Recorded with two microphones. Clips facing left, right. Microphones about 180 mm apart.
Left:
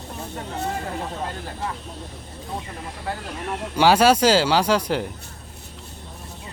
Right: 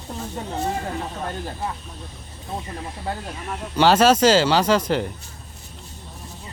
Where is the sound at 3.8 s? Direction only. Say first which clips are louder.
Right 1 dB; 10° left (ahead or behind).